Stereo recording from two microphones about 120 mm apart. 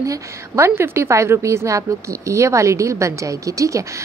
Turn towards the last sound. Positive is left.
turn(degrees=-25)  # may be behind; listen again after turning